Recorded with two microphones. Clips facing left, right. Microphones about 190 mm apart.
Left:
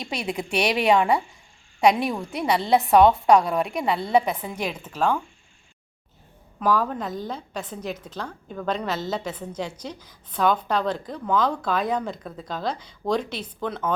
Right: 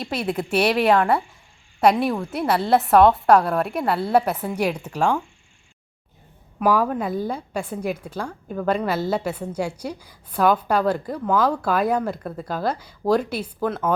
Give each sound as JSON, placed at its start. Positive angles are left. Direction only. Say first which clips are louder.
{"t": 0.0, "sound": "a woman's voice", "louder": "right 4 dB", "side_deg": -5}
{"t": 6.6, "sound": "a woman's voice", "louder": "right 3 dB", "side_deg": -10}